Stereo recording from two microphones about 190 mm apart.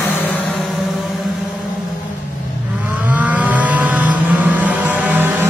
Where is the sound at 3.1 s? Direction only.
10° right (ahead or behind).